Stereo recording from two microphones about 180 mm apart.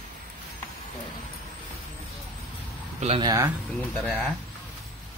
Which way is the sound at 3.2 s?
20° right (ahead or behind).